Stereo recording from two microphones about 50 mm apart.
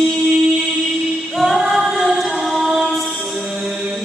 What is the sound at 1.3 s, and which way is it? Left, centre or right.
Choir, centre.